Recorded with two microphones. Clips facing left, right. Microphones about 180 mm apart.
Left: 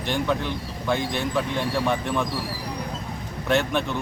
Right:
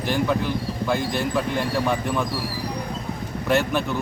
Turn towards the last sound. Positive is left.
turn(degrees=-5)  # may be behind; listen again after turning